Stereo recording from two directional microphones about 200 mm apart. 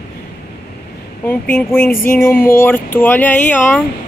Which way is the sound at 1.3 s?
10° left (ahead or behind).